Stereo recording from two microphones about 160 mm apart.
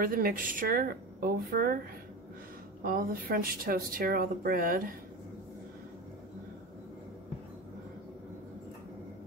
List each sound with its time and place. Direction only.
0.0 s speech: 65° right (ahead or behind)
2.8 s speech: 60° right (ahead or behind)